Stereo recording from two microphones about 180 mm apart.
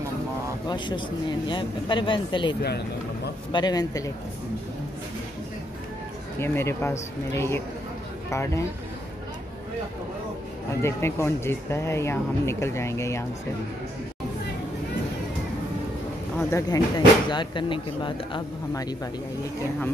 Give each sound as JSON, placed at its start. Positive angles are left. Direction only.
{"t": 0.7, "sound": "speech", "side_deg": 25}
{"t": 3.5, "sound": "speech", "side_deg": 20}
{"t": 6.4, "sound": "speech", "side_deg": 15}
{"t": 10.8, "sound": "speech", "side_deg": 15}
{"t": 16.3, "sound": "speech", "side_deg": 15}